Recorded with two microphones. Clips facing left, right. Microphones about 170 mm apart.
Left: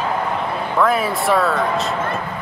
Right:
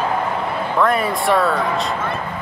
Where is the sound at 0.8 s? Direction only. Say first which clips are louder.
Even; centre (ahead or behind).